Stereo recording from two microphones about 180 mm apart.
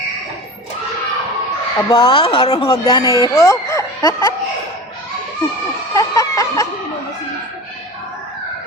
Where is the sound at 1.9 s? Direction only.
25° left (ahead or behind).